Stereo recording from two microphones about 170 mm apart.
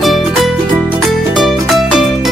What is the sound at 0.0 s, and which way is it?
Music, centre (ahead or behind).